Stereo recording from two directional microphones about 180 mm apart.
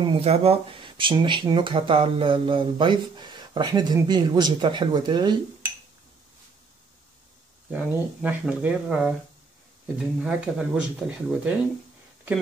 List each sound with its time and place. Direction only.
0.0 s speech: 35° right (ahead or behind)
7.7 s speech: 10° right (ahead or behind)